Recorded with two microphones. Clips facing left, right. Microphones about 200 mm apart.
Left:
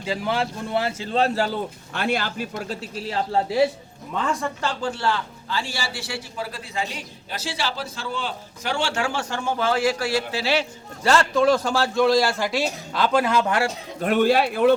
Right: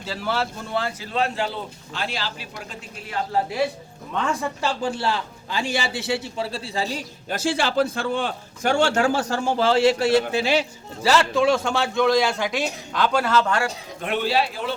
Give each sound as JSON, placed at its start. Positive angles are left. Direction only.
{"t": 0.0, "sound": "a man's voice", "side_deg": 10}
{"t": 1.9, "sound": "speech", "side_deg": 60}
{"t": 2.6, "sound": "a man's voice", "side_deg": 30}
{"t": 4.3, "sound": "a man's voice", "side_deg": 0}
{"t": 4.8, "sound": "a man's voice", "side_deg": -15}
{"t": 11.0, "sound": "a man's voice", "side_deg": 0}
{"t": 14.0, "sound": "speech", "side_deg": 45}